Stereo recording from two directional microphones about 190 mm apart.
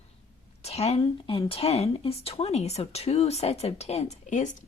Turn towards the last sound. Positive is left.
turn(degrees=40)  # may be behind; listen again after turning